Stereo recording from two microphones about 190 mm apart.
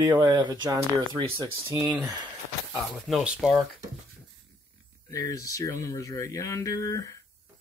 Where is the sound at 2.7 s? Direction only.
5° right (ahead or behind).